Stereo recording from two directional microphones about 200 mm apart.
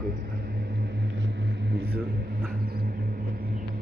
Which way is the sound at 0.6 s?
55° right (ahead or behind).